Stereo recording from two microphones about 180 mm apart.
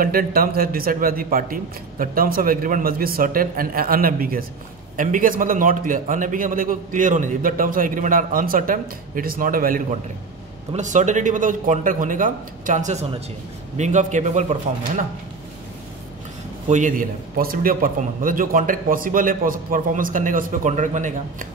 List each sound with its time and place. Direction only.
0.0 s a man's voice: 55° right (ahead or behind)
16.6 s a man's voice: 45° right (ahead or behind)